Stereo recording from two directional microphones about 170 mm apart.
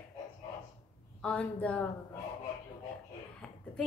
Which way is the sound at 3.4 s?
5° left (ahead or behind).